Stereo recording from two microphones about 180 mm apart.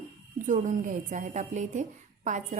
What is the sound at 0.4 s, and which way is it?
A woman's voice, 45° right (ahead or behind).